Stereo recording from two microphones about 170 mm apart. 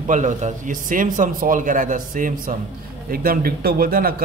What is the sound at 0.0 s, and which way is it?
A man's voice, 45° right (ahead or behind).